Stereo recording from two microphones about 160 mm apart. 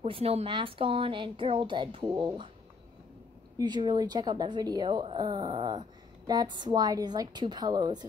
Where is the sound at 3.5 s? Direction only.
25° right (ahead or behind).